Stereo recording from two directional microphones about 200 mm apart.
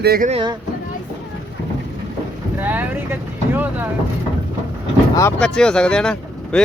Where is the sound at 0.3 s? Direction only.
25° right (ahead or behind).